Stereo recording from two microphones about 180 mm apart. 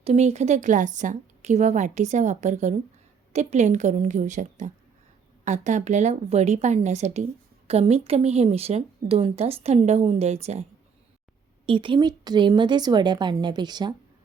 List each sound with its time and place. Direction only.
0.0 s speech: 40° right (ahead or behind)
11.6 s speech: 30° right (ahead or behind)